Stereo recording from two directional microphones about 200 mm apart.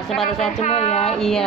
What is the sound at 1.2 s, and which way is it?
Speech, centre (ahead or behind).